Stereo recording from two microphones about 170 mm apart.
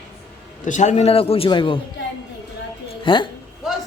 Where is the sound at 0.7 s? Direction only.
45° left (ahead or behind).